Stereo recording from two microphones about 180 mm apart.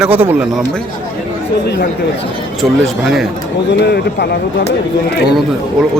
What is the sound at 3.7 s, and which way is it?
Speech, 70° left (ahead or behind).